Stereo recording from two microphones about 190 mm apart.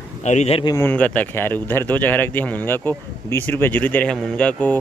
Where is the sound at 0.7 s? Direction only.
10° left (ahead or behind).